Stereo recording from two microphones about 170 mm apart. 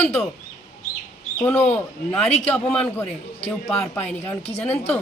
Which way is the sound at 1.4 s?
10° left (ahead or behind).